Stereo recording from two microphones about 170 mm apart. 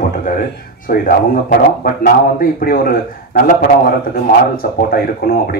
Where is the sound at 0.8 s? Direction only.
55° left (ahead or behind).